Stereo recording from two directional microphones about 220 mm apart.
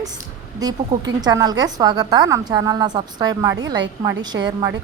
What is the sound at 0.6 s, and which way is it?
A woman's voice, 15° right (ahead or behind).